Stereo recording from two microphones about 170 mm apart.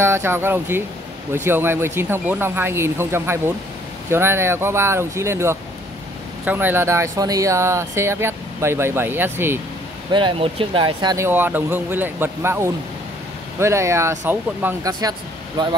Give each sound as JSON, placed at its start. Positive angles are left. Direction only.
{"t": 0.0, "sound": "speech", "side_deg": -15}
{"t": 10.1, "sound": "speech", "side_deg": -30}
{"t": 11.2, "sound": "speech", "side_deg": -10}